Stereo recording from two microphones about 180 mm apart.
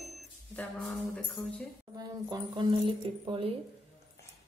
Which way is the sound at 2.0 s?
25° right (ahead or behind).